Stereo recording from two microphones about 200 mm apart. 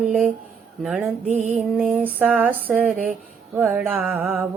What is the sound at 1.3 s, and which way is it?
Mantra, 35° right (ahead or behind).